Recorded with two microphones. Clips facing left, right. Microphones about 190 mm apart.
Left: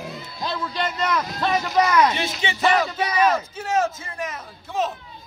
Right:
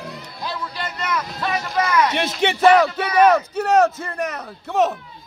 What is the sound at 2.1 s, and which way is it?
Music, 65° right (ahead or behind).